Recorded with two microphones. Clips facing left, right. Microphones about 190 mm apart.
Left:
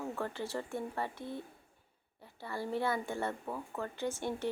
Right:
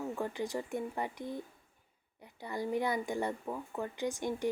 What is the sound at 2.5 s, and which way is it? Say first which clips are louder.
Speech: right 1 dB; 15° right (ahead or behind).